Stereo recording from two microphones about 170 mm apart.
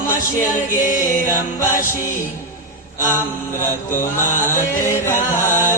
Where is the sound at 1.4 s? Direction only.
15° left (ahead or behind).